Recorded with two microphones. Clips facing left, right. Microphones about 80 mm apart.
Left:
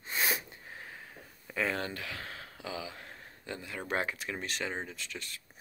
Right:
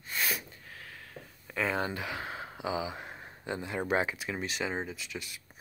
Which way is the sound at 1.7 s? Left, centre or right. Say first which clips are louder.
Right 4 dB; centre.